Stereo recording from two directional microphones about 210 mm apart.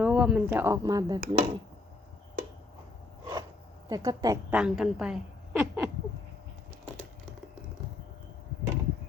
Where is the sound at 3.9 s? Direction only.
15° right (ahead or behind).